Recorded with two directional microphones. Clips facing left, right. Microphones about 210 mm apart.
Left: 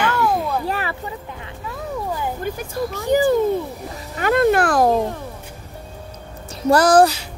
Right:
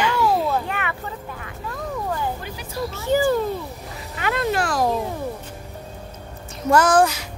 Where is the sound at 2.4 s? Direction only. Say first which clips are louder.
Left 6 dB; 50° left (ahead or behind).